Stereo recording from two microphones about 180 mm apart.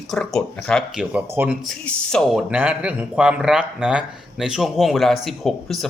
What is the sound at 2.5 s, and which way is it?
A man's voice, 10° right (ahead or behind).